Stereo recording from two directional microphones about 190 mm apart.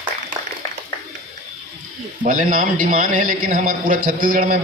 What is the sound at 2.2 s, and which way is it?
A man's voice, 45° right (ahead or behind).